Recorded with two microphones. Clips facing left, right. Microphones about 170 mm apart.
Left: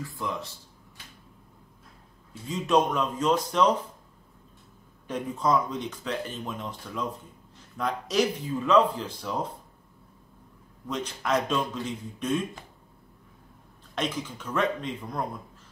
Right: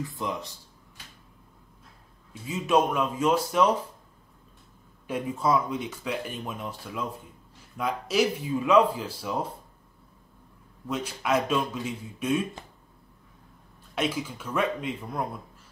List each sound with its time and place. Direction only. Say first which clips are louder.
0.0 s speech: right 1 dB; 20° right (ahead or behind)
2.4 s speech: even; 5° right (ahead or behind)
5.0 s speech: right 1 dB; 10° right (ahead or behind)
10.9 s speech: right 1 dB; 10° right (ahead or behind)
13.9 s speech: right 2 dB; 10° right (ahead or behind)